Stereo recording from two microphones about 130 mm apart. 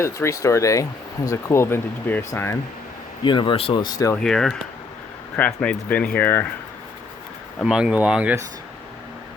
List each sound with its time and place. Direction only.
0.0 s speech: 25° left (ahead or behind)
3.2 s speech: 40° left (ahead or behind)
4.1 s speech: 5° left (ahead or behind)
7.6 s speech: 5° right (ahead or behind)